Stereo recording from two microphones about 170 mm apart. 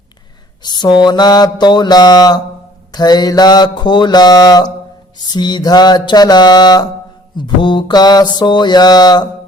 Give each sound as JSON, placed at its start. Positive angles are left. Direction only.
{"t": 0.6, "sound": "mantra", "side_deg": 25}